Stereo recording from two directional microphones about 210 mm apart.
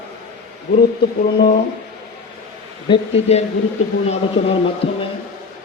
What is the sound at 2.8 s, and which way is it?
Speech, 25° left (ahead or behind).